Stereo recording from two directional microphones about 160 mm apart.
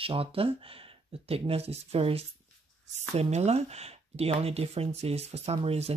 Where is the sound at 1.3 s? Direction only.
40° right (ahead or behind).